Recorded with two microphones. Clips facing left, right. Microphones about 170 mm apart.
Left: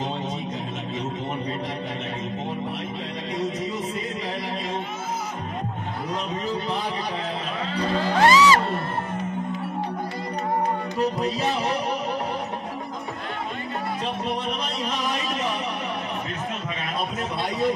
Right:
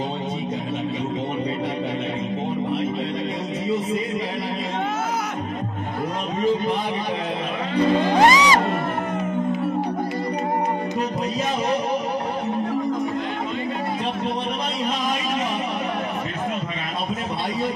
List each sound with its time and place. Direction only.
8.0 s music: 15° right (ahead or behind)